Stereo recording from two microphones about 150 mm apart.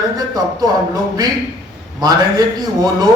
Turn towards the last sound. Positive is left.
turn(degrees=-25)  # may be behind; listen again after turning